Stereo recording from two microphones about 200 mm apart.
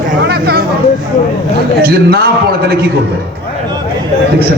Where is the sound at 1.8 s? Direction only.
50° right (ahead or behind).